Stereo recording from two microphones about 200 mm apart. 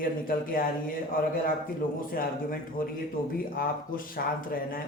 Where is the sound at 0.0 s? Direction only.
45° left (ahead or behind).